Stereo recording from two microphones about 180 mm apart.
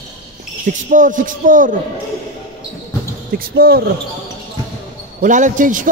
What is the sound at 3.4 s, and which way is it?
Speech, 60° right (ahead or behind).